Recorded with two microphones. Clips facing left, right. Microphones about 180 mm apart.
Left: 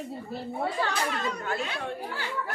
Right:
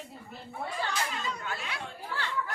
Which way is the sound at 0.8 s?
65° left (ahead or behind).